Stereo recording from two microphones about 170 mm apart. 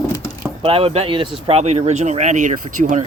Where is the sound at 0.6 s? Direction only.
35° right (ahead or behind).